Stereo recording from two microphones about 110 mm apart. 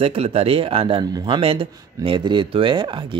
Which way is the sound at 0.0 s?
60° right (ahead or behind).